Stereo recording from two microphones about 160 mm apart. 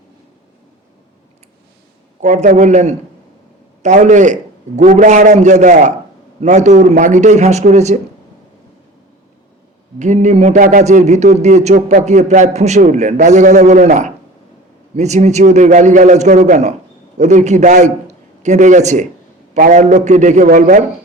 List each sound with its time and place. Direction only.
2.2 s a man's voice: 45° right (ahead or behind)
10.0 s a man's voice: 45° right (ahead or behind)